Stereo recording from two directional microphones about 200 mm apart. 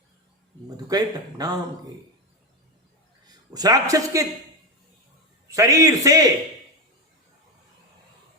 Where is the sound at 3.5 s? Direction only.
20° right (ahead or behind).